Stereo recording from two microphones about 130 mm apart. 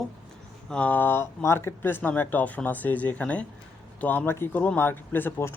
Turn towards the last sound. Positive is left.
turn(degrees=15)  # may be behind; listen again after turning